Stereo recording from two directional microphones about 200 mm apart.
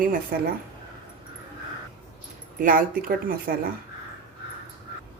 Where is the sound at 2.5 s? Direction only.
45° right (ahead or behind).